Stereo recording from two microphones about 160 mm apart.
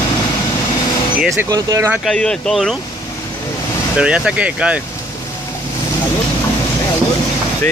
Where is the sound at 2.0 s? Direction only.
5° left (ahead or behind).